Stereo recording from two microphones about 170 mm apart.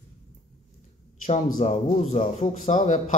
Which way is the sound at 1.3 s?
40° left (ahead or behind).